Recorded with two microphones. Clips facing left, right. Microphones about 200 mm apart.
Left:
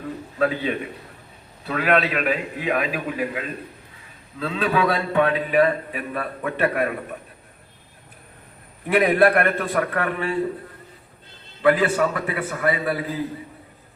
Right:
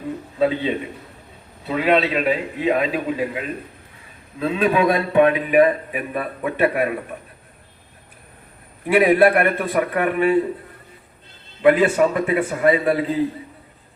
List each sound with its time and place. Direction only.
0.3 s a man's voice: 25° right (ahead or behind)
8.9 s a man's voice: 10° right (ahead or behind)
11.6 s a man's voice: 25° right (ahead or behind)